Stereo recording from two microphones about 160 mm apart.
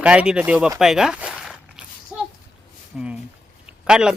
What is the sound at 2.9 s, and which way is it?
Speech, 5° right (ahead or behind).